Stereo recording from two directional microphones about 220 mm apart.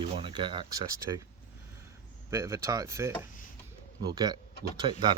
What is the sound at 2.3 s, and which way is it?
Speech, 10° right (ahead or behind).